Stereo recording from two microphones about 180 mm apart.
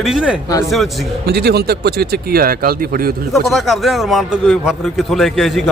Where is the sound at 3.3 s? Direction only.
Centre (ahead or behind).